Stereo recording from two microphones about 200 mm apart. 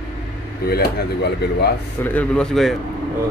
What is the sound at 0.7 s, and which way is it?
Speech, 55° left (ahead or behind).